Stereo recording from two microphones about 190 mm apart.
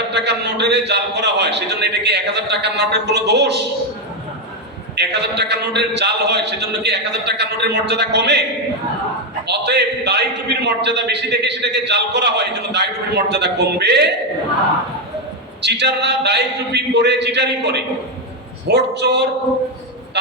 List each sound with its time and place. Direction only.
0.1 s a man's voice: 65° right (ahead or behind)
4.9 s a man's voice: 60° right (ahead or behind)
9.5 s a man's voice: 60° right (ahead or behind)
15.6 s a man's voice: 65° right (ahead or behind)